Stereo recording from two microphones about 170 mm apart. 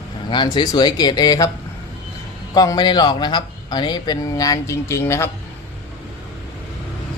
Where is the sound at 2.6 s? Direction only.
25° left (ahead or behind).